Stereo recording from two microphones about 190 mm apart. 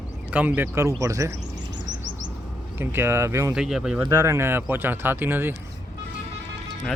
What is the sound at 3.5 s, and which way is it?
Speech, 5° right (ahead or behind).